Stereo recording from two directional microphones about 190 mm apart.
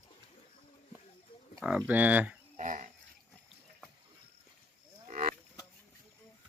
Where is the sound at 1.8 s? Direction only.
10° right (ahead or behind).